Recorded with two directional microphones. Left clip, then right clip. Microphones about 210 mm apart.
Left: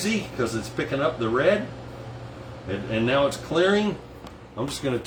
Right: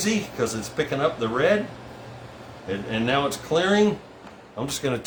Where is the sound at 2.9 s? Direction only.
40° right (ahead or behind).